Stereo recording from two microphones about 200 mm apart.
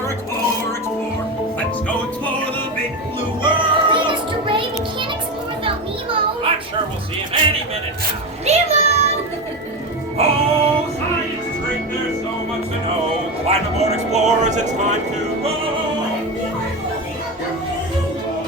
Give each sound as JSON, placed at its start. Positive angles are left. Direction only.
{"t": 1.5, "sound": "music", "side_deg": 5}
{"t": 3.4, "sound": "music", "side_deg": -25}
{"t": 8.4, "sound": "a sound", "side_deg": -35}
{"t": 10.2, "sound": "music", "side_deg": -30}
{"t": 13.5, "sound": "music", "side_deg": -35}